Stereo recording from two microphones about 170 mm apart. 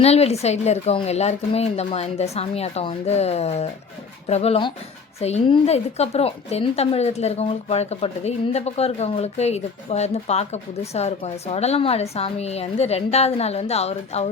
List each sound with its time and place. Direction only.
0.0 s a woman's voice: 35° left (ahead or behind)